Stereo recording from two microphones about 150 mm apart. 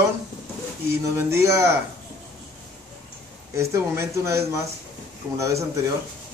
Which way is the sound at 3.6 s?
20° right (ahead or behind).